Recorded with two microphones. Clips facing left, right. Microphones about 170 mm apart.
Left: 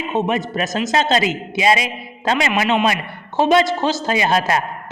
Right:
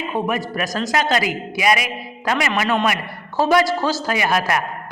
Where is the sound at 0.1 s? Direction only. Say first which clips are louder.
Left 4 dB; 20° left (ahead or behind).